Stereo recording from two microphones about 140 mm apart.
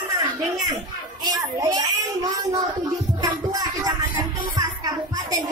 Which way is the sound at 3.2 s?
25° right (ahead or behind).